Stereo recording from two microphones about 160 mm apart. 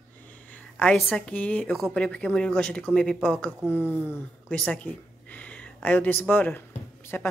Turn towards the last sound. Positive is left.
turn(degrees=10)  # may be behind; listen again after turning